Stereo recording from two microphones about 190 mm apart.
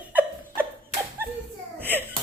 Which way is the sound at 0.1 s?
10° right (ahead or behind).